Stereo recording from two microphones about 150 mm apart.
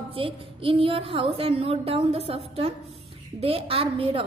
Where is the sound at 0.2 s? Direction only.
35° right (ahead or behind).